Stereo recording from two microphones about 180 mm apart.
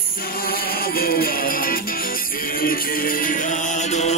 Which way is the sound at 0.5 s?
55° left (ahead or behind).